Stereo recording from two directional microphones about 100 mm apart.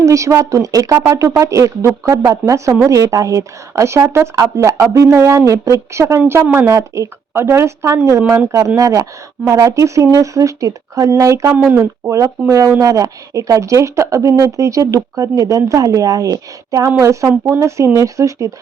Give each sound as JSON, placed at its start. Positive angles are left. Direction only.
{"t": 0.0, "sound": "a woman's voice", "side_deg": -30}
{"t": 11.5, "sound": "a woman's voice", "side_deg": -15}